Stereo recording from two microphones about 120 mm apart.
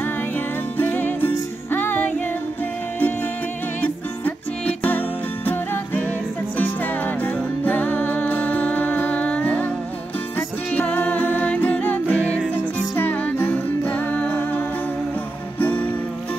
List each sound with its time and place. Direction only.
0.7 s music: 15° left (ahead or behind)
3.8 s music: 15° left (ahead or behind)
7.6 s music: 15° left (ahead or behind)
10.7 s music: 15° left (ahead or behind)
15.6 s music: 15° left (ahead or behind)